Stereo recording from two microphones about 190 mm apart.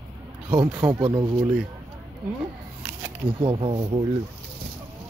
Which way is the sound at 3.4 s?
25° right (ahead or behind).